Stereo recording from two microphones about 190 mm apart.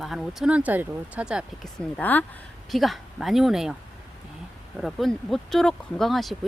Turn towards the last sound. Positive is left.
turn(degrees=0)  # may be behind; listen again after turning